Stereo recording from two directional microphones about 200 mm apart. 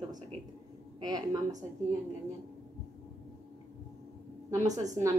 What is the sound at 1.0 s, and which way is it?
Speech, 20° right (ahead or behind).